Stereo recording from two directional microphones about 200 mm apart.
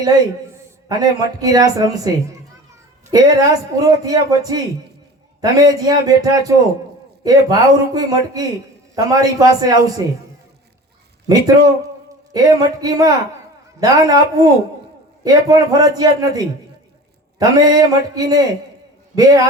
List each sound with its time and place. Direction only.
0.9 s a man's voice: 20° right (ahead or behind)
11.3 s a man's voice: 20° right (ahead or behind)
17.4 s a man's voice: 20° right (ahead or behind)